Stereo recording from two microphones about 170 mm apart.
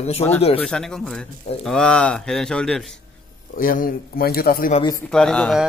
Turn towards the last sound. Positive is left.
turn(degrees=5)  # may be behind; listen again after turning